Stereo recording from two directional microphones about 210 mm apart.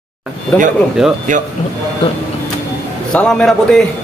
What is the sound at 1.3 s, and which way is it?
Speech, 40° right (ahead or behind).